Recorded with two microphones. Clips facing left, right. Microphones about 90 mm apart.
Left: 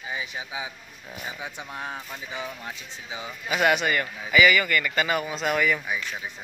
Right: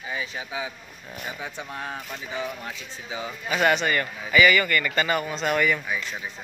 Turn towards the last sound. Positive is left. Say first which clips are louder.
# right 1 dB
turn(degrees=0)  # may be behind; listen again after turning